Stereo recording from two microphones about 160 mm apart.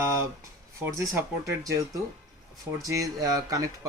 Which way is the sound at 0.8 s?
15° right (ahead or behind).